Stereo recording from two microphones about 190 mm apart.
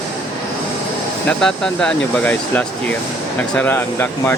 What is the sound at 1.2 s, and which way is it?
Speech, 5° left (ahead or behind).